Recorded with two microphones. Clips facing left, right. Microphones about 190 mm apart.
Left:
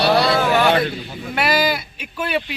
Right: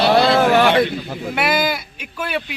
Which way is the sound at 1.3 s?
5° right (ahead or behind).